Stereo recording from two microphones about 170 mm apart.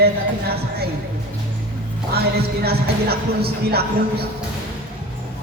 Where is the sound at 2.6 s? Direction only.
65° right (ahead or behind).